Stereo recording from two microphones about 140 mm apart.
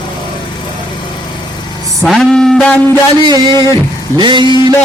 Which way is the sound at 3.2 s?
30° right (ahead or behind).